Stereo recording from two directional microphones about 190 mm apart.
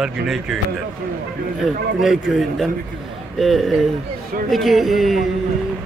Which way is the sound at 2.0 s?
Centre (ahead or behind).